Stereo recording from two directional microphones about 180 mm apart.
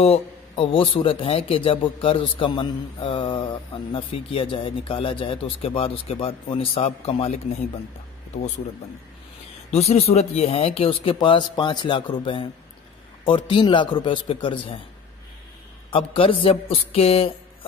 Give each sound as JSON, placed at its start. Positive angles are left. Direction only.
{"t": 0.0, "sound": "a man's voice", "side_deg": 30}
{"t": 9.7, "sound": "a man's voice", "side_deg": 35}
{"t": 16.1, "sound": "speech", "side_deg": 30}